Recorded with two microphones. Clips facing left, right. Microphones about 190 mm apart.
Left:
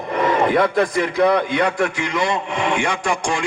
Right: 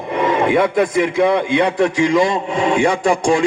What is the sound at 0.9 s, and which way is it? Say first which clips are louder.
Speech: right 1 dB; 20° right (ahead or behind).